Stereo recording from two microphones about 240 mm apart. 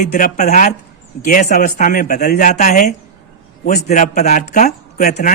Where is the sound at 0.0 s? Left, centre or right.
Left.